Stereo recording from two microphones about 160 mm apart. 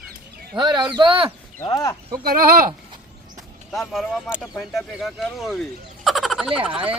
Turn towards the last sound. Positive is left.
turn(degrees=-5)  # may be behind; listen again after turning